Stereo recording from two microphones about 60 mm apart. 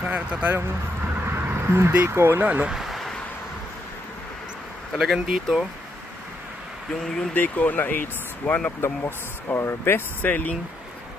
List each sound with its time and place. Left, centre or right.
0.0 s speech: right
1.2 s a sound: right
2.0 s speech: right
2.7 s a sound: centre
4.9 s speech: centre
7.3 s speech: left
8.8 s speech: left